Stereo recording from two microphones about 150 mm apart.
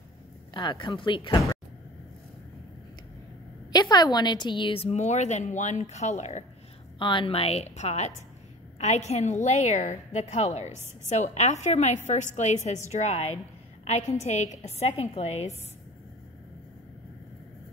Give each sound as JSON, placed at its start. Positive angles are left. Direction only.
{"t": 0.6, "sound": "speech", "side_deg": 30}
{"t": 3.7, "sound": "a woman's voice", "side_deg": 25}
{"t": 7.0, "sound": "a woman's voice", "side_deg": 35}